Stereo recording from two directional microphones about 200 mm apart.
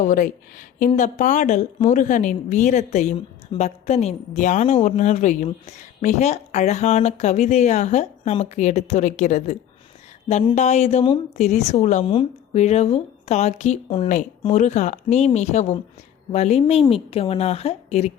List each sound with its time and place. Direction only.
0.0 s a woman's voice: 40° left (ahead or behind)